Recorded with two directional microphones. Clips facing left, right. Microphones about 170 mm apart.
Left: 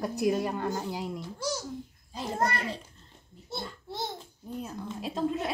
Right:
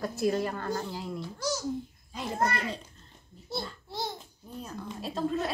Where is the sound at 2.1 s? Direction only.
35° left (ahead or behind).